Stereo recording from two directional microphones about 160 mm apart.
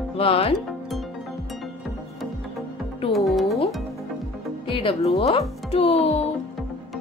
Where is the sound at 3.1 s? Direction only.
Centre (ahead or behind).